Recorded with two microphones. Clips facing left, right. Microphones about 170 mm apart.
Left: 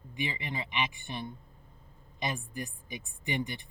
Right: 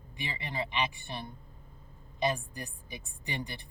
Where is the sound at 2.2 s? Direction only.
15° left (ahead or behind).